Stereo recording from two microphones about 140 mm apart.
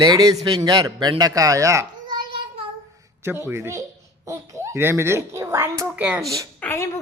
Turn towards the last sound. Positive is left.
turn(degrees=15)  # may be behind; listen again after turning